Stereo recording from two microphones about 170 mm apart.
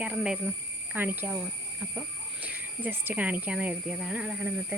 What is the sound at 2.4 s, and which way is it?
Speech, 10° right (ahead or behind).